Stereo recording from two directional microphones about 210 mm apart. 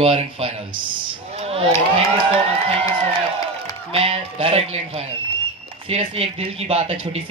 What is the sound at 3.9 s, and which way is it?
Speech, 25° right (ahead or behind).